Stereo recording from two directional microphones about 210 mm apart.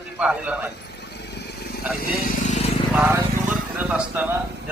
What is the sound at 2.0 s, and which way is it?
Vehicle, 40° left (ahead or behind).